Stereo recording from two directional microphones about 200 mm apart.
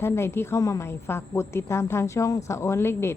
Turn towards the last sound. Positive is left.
turn(degrees=10)  # may be behind; listen again after turning